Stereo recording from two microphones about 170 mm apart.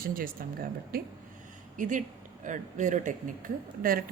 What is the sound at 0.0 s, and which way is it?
A woman's voice, 55° right (ahead or behind).